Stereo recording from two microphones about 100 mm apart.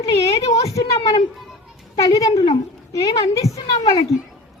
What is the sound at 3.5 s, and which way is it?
Speech, 90° left.